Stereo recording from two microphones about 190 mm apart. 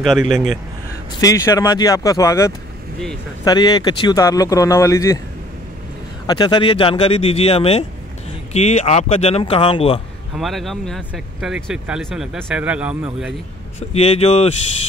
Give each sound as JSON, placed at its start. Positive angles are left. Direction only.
{"t": 0.0, "sound": "speech", "side_deg": 0}
{"t": 1.2, "sound": "speech", "side_deg": 15}
{"t": 6.2, "sound": "speech", "side_deg": 20}
{"t": 10.3, "sound": "speech", "side_deg": 0}
{"t": 13.7, "sound": "speech", "side_deg": 35}